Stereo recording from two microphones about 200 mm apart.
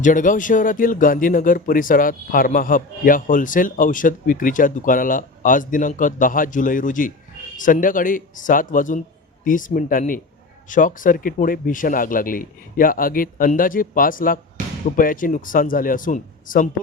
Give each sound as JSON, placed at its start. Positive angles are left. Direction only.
{"t": 0.0, "sound": "speech", "side_deg": 40}